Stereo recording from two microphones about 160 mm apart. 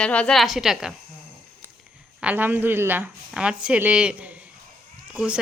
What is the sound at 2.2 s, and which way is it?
A woman's voice, 10° right (ahead or behind).